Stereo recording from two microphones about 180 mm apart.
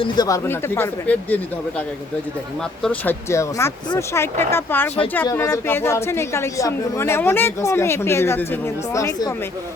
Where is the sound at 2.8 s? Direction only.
10° left (ahead or behind).